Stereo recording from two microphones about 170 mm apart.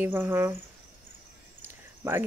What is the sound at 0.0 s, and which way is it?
Speech, 10° right (ahead or behind).